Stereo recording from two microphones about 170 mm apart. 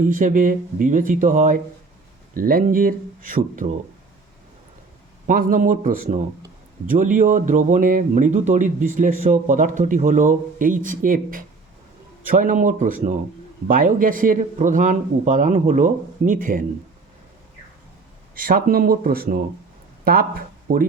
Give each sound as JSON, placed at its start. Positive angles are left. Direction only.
{"t": 0.0, "sound": "speech", "side_deg": -50}
{"t": 5.2, "sound": "speech", "side_deg": -50}
{"t": 18.3, "sound": "speech", "side_deg": -55}
{"t": 20.7, "sound": "speech", "side_deg": -60}